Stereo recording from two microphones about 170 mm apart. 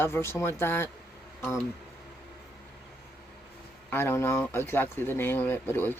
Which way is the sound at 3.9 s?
15° left (ahead or behind).